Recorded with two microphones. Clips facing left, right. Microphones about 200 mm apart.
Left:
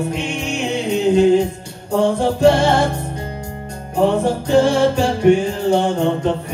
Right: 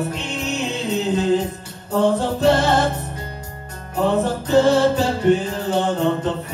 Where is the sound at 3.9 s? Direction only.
10° left (ahead or behind).